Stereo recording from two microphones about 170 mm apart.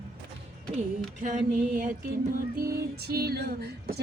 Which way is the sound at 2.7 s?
65° right (ahead or behind).